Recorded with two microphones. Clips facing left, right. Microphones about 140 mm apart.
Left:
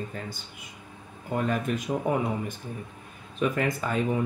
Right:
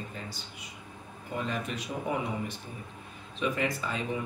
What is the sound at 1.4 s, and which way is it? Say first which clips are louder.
Speech: left 6 dB; 50° left (ahead or behind).